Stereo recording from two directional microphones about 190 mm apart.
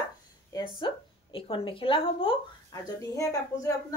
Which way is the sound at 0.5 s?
25° left (ahead or behind).